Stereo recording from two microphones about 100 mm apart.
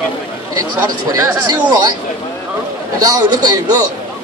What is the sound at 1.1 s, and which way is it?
Speech, 35° right (ahead or behind).